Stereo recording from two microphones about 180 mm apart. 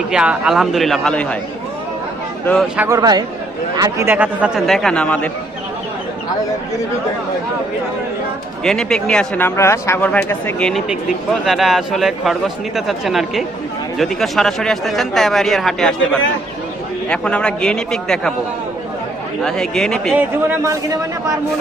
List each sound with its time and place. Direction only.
0.1 s speech: 5° right (ahead or behind)
2.7 s a man's voice: 15° right (ahead or behind); by 5.3 s 5° left (ahead or behind)
8.6 s speech: 5° left (ahead or behind)
17.1 s speech: 5° left (ahead or behind)
19.4 s speech: 5° left (ahead or behind)
20.1 s a man's voice: 15° right (ahead or behind)